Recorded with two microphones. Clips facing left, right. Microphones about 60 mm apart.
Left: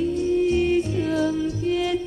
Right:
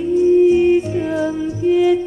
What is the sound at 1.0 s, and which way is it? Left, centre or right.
Music, centre.